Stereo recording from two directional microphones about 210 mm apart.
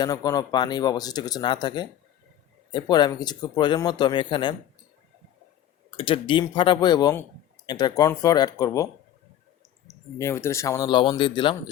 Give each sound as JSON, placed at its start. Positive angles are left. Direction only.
{"t": 0.0, "sound": "speech", "side_deg": 20}
{"t": 6.0, "sound": "speech", "side_deg": 25}
{"t": 10.2, "sound": "speech", "side_deg": 10}